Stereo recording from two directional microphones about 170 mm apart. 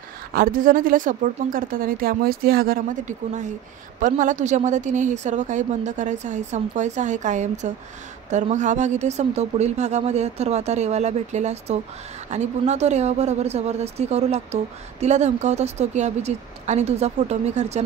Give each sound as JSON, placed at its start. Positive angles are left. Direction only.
{"t": 0.3, "sound": "a woman's voice", "side_deg": -55}